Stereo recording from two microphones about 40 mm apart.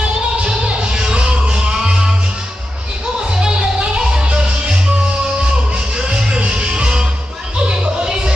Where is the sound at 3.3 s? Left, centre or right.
Centre.